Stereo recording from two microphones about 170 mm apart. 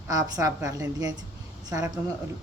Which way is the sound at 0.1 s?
20° right (ahead or behind).